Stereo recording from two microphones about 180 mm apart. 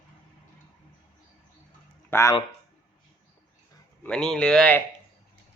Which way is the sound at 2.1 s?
15° left (ahead or behind).